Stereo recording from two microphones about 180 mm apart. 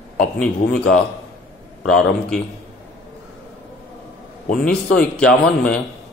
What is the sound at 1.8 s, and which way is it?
Speech, 5° left (ahead or behind).